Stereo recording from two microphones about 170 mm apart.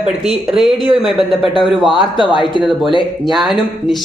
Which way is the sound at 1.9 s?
30° left (ahead or behind).